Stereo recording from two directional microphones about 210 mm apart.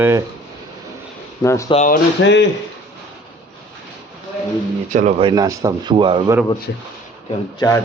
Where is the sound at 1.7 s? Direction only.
35° left (ahead or behind).